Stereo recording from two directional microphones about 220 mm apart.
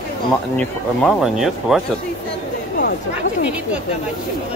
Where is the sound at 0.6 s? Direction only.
Centre (ahead or behind).